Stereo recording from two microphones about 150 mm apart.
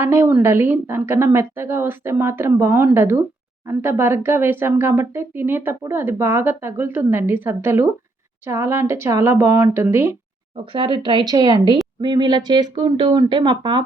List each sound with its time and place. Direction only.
0.0 s speech: 15° right (ahead or behind)
10.7 s speech: 35° right (ahead or behind)